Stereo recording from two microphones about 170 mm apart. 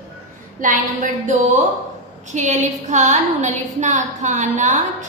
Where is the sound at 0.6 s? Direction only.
50° right (ahead or behind).